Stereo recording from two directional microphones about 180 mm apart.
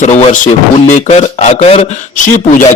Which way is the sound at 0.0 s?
40° left (ahead or behind).